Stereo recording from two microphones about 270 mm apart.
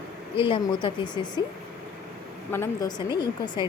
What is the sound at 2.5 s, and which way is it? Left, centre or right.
A woman's voice, centre.